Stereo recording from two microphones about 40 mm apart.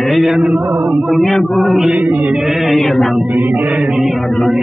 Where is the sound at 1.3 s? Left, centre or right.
Centre.